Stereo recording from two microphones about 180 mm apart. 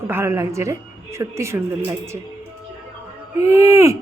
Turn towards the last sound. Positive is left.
turn(degrees=-15)  # may be behind; listen again after turning